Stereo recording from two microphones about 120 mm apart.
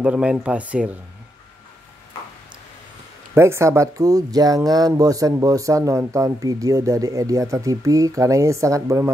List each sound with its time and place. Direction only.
0.0 s speech: 5° right (ahead or behind)
3.3 s speech: 20° right (ahead or behind)